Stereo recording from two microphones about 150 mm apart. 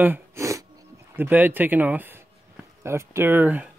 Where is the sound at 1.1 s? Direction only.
15° right (ahead or behind).